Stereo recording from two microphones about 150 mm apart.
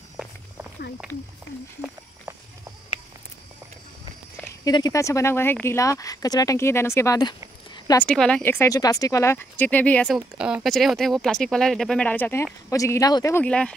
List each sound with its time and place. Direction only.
0.2 s walk: 5° right (ahead or behind)
4.6 s speech: 25° left (ahead or behind)
8.0 s speech: 5° left (ahead or behind)
10.1 s speech: 5° right (ahead or behind)